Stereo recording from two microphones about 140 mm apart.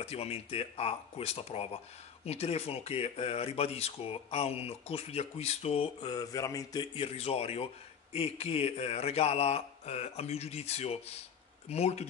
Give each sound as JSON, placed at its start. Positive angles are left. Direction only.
{"t": 0.0, "sound": "speech", "side_deg": 45}
{"t": 5.9, "sound": "a sound", "side_deg": 30}
{"t": 7.1, "sound": "speech", "side_deg": 45}